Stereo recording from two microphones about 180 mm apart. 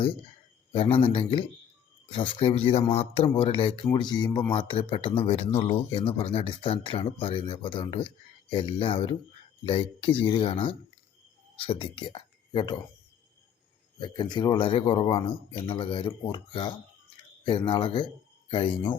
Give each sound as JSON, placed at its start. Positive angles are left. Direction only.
{"t": 0.7, "sound": "speech", "side_deg": 30}
{"t": 14.0, "sound": "speech", "side_deg": 25}